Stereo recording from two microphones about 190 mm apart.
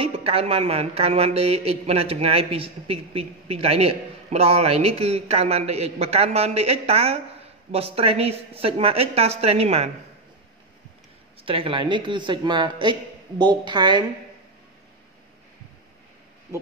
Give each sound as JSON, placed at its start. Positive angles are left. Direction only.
{"t": 0.0, "sound": "speech", "side_deg": -30}
{"t": 11.4, "sound": "speech", "side_deg": -30}